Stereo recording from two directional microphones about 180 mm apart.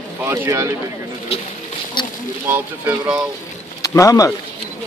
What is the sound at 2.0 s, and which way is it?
Rowboat, 25° left (ahead or behind).